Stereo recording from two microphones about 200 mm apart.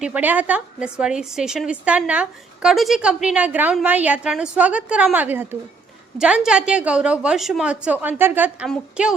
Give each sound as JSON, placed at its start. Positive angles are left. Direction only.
{"t": 0.0, "sound": "a woman's voice", "side_deg": -10}